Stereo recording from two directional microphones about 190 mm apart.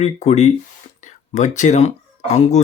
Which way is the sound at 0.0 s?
35° left (ahead or behind).